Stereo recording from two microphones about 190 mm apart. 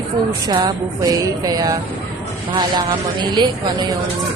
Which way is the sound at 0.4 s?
20° right (ahead or behind).